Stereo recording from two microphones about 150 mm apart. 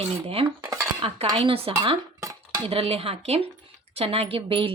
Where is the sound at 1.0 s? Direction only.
40° right (ahead or behind).